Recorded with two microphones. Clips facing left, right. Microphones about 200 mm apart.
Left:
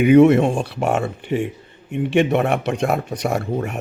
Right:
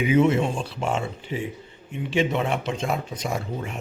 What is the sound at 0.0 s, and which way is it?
A man's voice, 65° left (ahead or behind).